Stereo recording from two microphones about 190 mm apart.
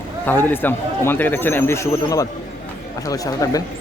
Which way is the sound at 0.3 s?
10° left (ahead or behind).